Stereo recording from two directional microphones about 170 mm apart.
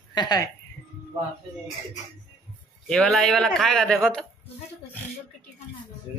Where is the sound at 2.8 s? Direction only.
5° left (ahead or behind).